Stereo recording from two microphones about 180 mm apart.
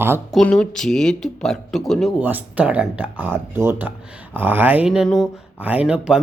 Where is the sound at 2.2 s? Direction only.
10° right (ahead or behind).